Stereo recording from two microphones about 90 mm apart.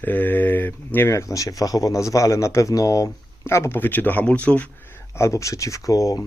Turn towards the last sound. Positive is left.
turn(degrees=40)  # may be behind; listen again after turning